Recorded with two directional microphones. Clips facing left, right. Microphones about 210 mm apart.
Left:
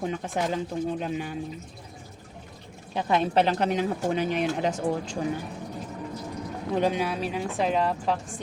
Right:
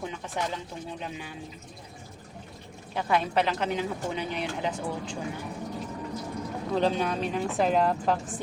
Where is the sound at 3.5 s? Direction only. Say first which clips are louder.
Left 4 dB; 50° left (ahead or behind).